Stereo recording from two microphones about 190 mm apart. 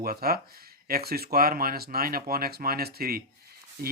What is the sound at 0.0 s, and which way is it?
Speech, 55° right (ahead or behind).